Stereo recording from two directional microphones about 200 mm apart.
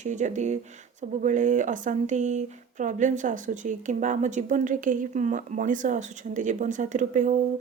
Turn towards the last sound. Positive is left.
turn(degrees=-40)  # may be behind; listen again after turning